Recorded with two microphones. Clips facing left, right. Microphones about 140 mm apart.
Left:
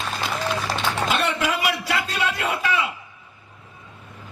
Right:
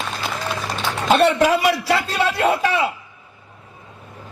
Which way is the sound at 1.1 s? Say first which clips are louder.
Right 13 dB; 40° right (ahead or behind).